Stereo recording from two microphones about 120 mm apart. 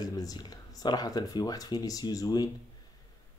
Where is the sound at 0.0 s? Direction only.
30° left (ahead or behind).